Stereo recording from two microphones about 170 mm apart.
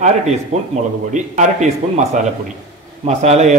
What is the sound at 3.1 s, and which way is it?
Speech, 40° right (ahead or behind).